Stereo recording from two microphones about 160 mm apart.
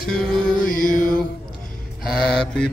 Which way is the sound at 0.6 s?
60° left (ahead or behind).